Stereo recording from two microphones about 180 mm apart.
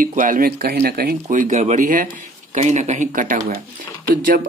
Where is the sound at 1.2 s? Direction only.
45° right (ahead or behind).